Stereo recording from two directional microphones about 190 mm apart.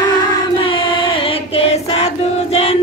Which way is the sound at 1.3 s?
30° left (ahead or behind).